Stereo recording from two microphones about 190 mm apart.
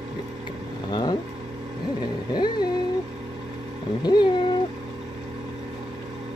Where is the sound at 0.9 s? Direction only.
20° left (ahead or behind).